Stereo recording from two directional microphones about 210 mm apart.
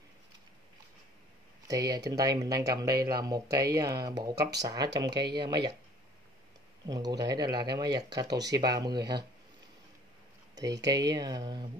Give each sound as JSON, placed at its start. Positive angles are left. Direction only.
{"t": 1.7, "sound": "speech", "side_deg": -15}
{"t": 6.9, "sound": "speech", "side_deg": -20}
{"t": 10.5, "sound": "speech", "side_deg": -15}